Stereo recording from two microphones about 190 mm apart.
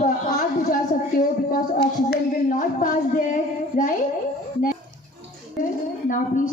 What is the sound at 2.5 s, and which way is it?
Speech, 45° left (ahead or behind).